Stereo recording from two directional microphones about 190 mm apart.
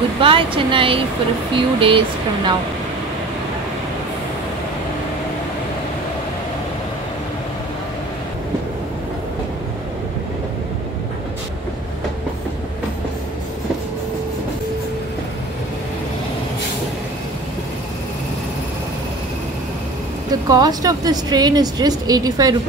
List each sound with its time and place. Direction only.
0.2 s vehicle: 25° right (ahead or behind)
1.5 s speech: 30° right (ahead or behind)
20.2 s speech: 20° right (ahead or behind)